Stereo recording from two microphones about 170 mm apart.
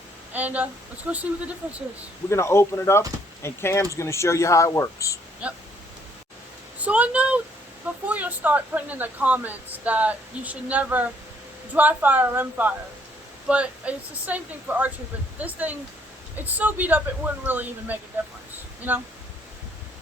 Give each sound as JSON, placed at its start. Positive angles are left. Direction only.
{"t": 0.3, "sound": "a woman's voice", "side_deg": -10}
{"t": 2.3, "sound": "speech", "side_deg": 15}
{"t": 5.4, "sound": "a woman's voice", "side_deg": -5}
{"t": 6.7, "sound": "a woman's voice", "side_deg": -10}